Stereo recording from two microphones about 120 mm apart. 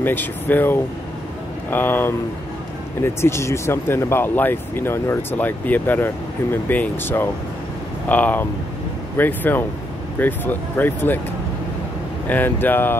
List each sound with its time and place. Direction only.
0.0 s speech: 15° left (ahead or behind)
12.3 s speech: 15° left (ahead or behind)